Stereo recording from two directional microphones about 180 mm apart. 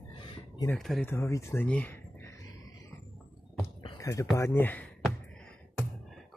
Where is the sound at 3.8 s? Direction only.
15° left (ahead or behind).